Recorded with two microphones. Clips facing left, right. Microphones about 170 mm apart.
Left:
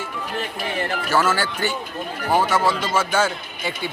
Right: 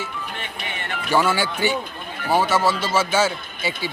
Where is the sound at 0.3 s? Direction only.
35° left (ahead or behind).